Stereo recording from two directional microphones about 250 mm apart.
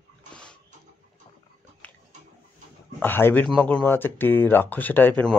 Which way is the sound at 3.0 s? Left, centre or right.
Centre.